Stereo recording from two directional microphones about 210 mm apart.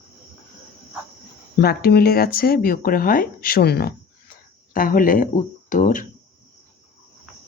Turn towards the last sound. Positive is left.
turn(degrees=40)  # may be behind; listen again after turning